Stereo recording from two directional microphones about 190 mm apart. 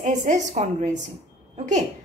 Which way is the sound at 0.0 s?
40° right (ahead or behind).